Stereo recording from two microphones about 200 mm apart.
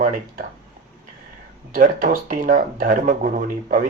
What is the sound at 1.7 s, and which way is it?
Speech, 40° right (ahead or behind).